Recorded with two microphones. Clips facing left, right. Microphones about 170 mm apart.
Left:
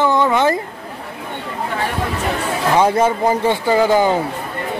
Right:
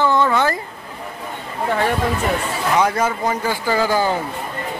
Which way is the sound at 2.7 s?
30° left (ahead or behind).